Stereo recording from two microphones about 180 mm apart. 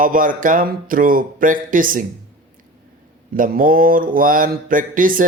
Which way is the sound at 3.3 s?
50° right (ahead or behind).